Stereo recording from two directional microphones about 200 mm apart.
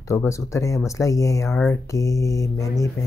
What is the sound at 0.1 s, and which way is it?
Speech, 15° left (ahead or behind).